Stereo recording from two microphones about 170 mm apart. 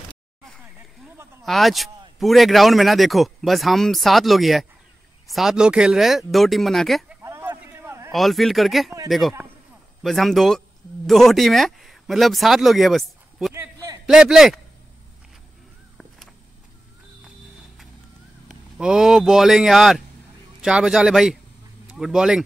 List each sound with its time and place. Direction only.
1.4 s speech: centre (ahead or behind)
7.2 s a sound: 15° right (ahead or behind)
8.1 s speech: centre (ahead or behind)
10.0 s speech: centre (ahead or behind)
13.5 s a sound: 20° right (ahead or behind)
14.0 s speech: 5° right (ahead or behind)
18.5 s speech: 5° right (ahead or behind)